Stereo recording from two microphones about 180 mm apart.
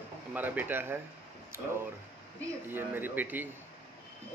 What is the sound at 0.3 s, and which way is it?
Speech, 10° right (ahead or behind).